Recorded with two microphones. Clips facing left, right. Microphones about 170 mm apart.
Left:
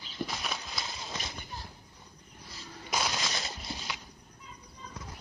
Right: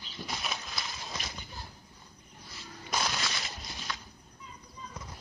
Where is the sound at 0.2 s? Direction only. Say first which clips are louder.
Left 4 dB; 50° left (ahead or behind).